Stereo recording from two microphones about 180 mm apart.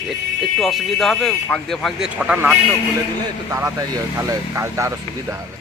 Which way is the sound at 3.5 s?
20° right (ahead or behind).